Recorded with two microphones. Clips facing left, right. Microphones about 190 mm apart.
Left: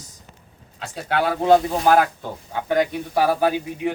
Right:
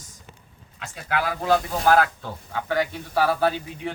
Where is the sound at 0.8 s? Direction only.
30° left (ahead or behind).